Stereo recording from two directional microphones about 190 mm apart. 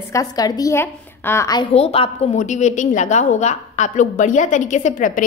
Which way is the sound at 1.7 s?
30° left (ahead or behind).